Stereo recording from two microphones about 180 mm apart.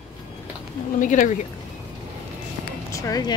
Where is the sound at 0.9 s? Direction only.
45° left (ahead or behind).